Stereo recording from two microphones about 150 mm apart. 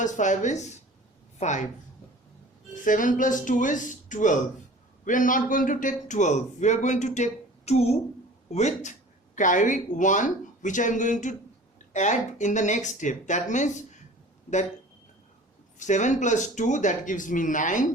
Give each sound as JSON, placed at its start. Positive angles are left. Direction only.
{"t": 0.0, "sound": "a man's voice", "side_deg": 55}
{"t": 2.8, "sound": "a man's voice", "side_deg": 60}
{"t": 15.8, "sound": "speech", "side_deg": 55}